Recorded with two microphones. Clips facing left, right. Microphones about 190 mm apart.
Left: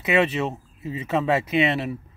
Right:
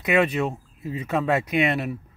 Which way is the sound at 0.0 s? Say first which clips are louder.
Even; centre (ahead or behind).